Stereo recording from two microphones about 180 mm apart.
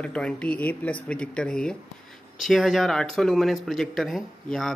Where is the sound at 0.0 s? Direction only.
5° left (ahead or behind).